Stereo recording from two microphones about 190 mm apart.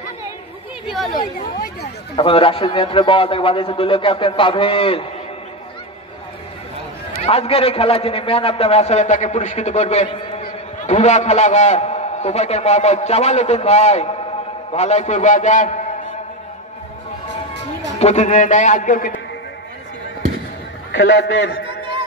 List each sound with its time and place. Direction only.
0.8 s speech: centre (ahead or behind)
1.1 s speech: 45° left (ahead or behind)
2.1 s a man's voice: 30° left (ahead or behind)
7.2 s a man's voice: 30° left (ahead or behind)
17.9 s a man's voice: 35° left (ahead or behind)
20.9 s a man's voice: 70° left (ahead or behind)